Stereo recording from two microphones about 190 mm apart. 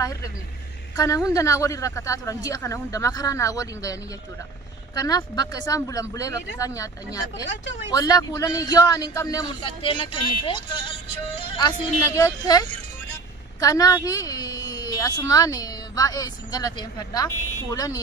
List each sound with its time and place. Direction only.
0.9 s a man's voice: 15° left (ahead or behind)